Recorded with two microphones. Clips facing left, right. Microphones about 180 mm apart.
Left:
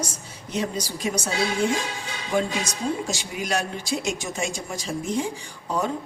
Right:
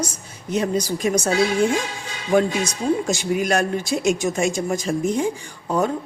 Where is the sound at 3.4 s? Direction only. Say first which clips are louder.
Right 3 dB; 55° right (ahead or behind).